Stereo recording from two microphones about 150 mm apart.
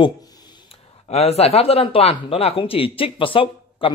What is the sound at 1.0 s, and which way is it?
Speech, 45° left (ahead or behind).